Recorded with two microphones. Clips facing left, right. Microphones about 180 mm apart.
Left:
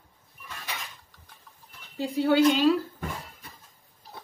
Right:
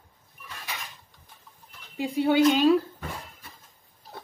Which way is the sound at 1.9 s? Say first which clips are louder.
Even; 15° right (ahead or behind).